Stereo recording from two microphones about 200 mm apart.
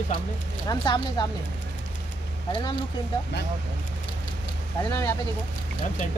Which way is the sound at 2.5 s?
20° left (ahead or behind).